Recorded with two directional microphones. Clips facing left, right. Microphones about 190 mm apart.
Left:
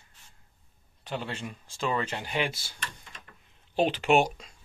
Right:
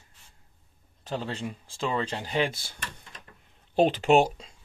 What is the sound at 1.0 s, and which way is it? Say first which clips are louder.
Speech: right 3 dB; 40° right (ahead or behind).